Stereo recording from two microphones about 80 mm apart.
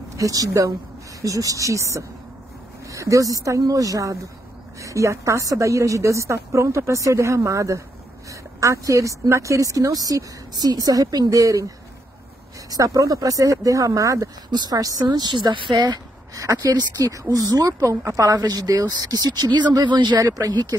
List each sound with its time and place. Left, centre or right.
0.2 s a woman's voice: right
12.6 s a woman's voice: right
14.5 s a woman's voice: right
15.0 s speech: right
16.5 s a woman's voice: right
20.2 s a woman's voice: right